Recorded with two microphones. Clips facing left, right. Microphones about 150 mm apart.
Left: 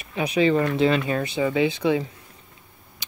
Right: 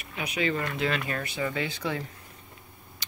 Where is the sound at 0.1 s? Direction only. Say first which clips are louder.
Left 9 dB; 30° left (ahead or behind).